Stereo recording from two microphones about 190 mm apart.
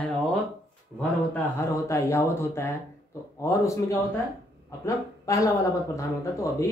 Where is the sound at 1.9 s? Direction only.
15° left (ahead or behind).